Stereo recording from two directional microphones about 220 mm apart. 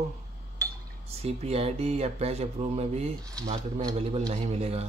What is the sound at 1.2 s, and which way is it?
Speech, 30° right (ahead or behind).